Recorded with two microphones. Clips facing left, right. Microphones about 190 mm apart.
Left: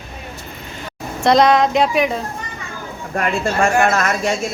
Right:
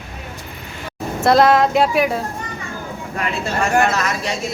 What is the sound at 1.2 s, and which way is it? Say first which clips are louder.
Speech: even; 5° right (ahead or behind).